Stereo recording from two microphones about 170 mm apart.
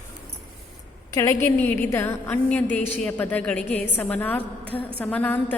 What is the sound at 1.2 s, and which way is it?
A woman's voice, 20° left (ahead or behind).